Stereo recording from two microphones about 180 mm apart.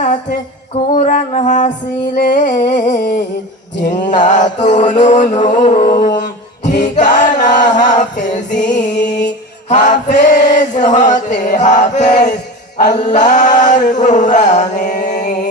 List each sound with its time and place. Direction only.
0.0 s music: 45° left (ahead or behind)
0.9 s chant: 40° left (ahead or behind)
6.8 s music: 40° left (ahead or behind)
7.9 s chant: 40° left (ahead or behind)
9.0 s music: 75° left (ahead or behind)
9.6 s chant: 40° left (ahead or behind)